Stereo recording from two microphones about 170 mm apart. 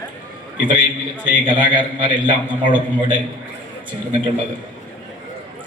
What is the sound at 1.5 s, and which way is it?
A man's voice, 30° right (ahead or behind).